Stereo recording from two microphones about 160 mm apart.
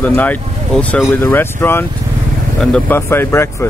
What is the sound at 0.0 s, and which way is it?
Speech, 10° left (ahead or behind).